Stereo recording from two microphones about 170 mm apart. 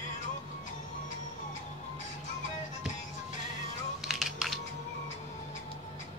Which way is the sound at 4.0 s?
Centre (ahead or behind).